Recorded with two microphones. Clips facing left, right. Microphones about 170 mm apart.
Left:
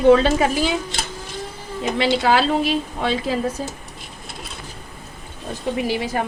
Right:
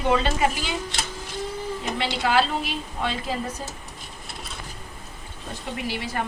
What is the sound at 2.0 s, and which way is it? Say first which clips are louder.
A woman's voice: left 5 dB; 90° left.